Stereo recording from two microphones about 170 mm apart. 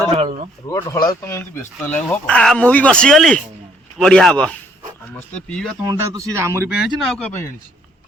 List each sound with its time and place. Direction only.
0.2 s a sound: 40° right (ahead or behind)
0.7 s a man's voice: 25° left (ahead or behind); by 5.7 s 5° left (ahead or behind)
5.8 s speech: 20° right (ahead or behind)
6.7 s a man's voice: 5° right (ahead or behind)